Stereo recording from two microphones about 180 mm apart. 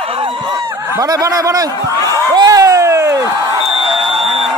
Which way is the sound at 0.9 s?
20° right (ahead or behind).